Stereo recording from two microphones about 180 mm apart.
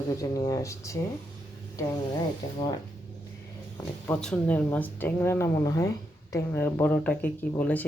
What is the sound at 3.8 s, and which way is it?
Speech, 15° left (ahead or behind).